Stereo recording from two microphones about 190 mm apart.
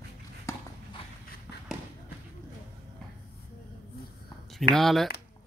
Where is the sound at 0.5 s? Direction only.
15° left (ahead or behind).